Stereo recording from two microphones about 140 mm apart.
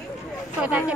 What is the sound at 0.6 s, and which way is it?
Speech, 10° right (ahead or behind).